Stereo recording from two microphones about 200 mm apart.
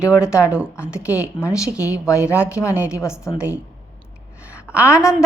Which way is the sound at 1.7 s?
15° left (ahead or behind).